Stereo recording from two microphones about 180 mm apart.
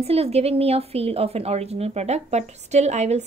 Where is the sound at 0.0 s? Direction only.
35° right (ahead or behind).